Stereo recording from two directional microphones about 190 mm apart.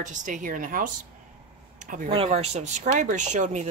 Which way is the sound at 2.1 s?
30° right (ahead or behind).